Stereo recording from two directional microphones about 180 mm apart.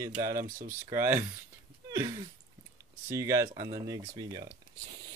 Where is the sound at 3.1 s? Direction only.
15° right (ahead or behind).